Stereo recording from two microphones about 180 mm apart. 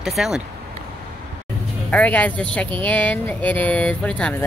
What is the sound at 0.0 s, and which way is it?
Speech, 5° right (ahead or behind).